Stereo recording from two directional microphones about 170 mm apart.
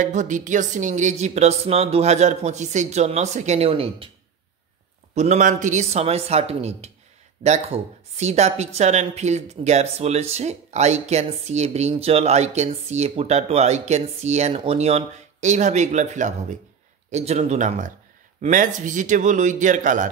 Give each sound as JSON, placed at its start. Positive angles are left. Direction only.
{"t": 0.0, "sound": "a woman's voice", "side_deg": -45}
{"t": 5.1, "sound": "a woman's voice", "side_deg": -40}